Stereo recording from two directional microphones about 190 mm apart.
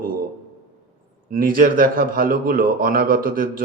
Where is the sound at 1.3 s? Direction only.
45° right (ahead or behind).